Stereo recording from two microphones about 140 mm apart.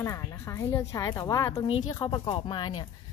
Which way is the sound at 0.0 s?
20° left (ahead or behind).